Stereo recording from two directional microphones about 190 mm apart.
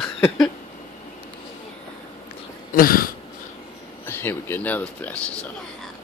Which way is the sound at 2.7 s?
50° left (ahead or behind).